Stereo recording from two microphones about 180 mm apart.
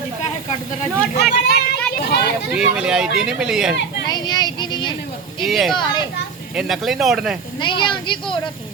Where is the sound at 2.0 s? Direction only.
65° left (ahead or behind).